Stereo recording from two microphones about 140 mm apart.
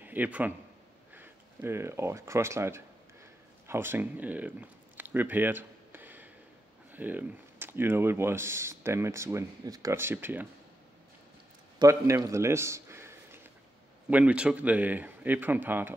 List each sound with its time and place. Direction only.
0.0 s a man's voice: 10° right (ahead or behind)
3.6 s a sound: 15° right (ahead or behind)
6.9 s speech: 15° right (ahead or behind)
11.8 s a man's voice: 20° right (ahead or behind)